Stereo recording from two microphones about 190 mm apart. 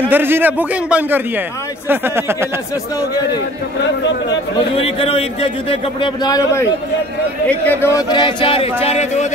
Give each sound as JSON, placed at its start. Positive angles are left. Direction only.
{"t": 0.1, "sound": "a man's voice", "side_deg": -10}
{"t": 4.7, "sound": "a man's voice", "side_deg": 30}
{"t": 7.4, "sound": "a man's voice", "side_deg": 10}
{"t": 8.1, "sound": "a man's voice", "side_deg": 25}